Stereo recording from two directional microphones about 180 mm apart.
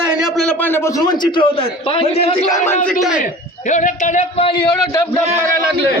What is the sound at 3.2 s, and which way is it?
A man's voice, 45° left (ahead or behind).